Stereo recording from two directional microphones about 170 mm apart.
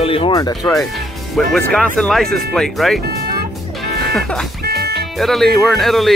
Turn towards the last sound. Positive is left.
turn(degrees=0)  # may be behind; listen again after turning